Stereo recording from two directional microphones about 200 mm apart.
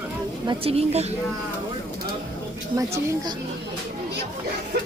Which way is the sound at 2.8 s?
15° right (ahead or behind).